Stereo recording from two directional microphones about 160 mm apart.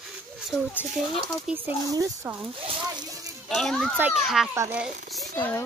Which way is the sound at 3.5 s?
5° left (ahead or behind).